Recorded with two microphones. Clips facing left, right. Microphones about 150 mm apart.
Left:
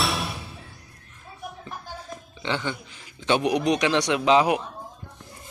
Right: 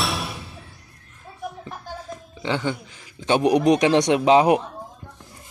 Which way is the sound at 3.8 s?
45° right (ahead or behind).